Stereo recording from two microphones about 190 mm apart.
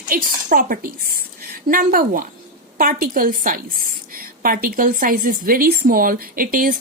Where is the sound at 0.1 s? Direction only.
50° right (ahead or behind).